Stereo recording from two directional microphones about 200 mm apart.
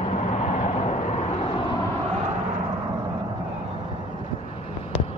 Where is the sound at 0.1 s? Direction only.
35° left (ahead or behind).